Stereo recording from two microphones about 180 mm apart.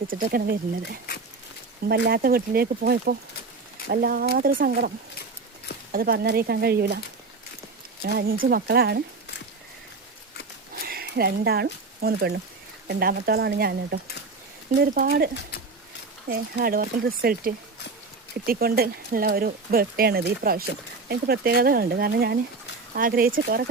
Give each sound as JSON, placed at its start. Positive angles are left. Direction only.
{"t": 0.1, "sound": "speech", "side_deg": -55}
{"t": 5.9, "sound": "speech", "side_deg": -55}
{"t": 8.0, "sound": "speech", "side_deg": -55}
{"t": 10.8, "sound": "speech", "side_deg": -55}
{"t": 16.3, "sound": "speech", "side_deg": -55}